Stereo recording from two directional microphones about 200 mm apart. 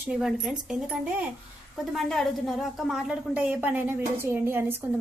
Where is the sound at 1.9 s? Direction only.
Centre (ahead or behind).